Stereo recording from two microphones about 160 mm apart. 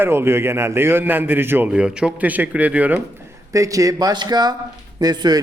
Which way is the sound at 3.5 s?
20° right (ahead or behind).